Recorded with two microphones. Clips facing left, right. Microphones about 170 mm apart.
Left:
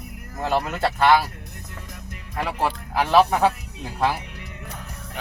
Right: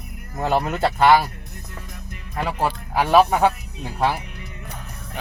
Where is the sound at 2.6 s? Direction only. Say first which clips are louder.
Right 1 dB; 15° right (ahead or behind).